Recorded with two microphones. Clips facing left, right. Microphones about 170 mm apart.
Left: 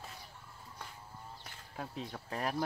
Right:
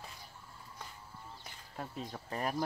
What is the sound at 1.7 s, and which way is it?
Speech, centre (ahead or behind).